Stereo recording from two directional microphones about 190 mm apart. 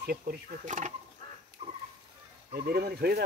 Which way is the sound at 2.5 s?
55° right (ahead or behind).